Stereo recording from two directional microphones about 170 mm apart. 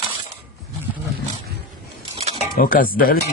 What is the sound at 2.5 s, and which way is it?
Speech, 55° left (ahead or behind).